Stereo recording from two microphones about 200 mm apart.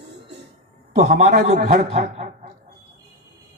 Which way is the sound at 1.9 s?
30° right (ahead or behind).